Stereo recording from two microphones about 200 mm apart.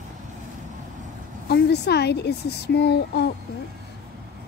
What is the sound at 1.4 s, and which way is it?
Speech, 55° left (ahead or behind).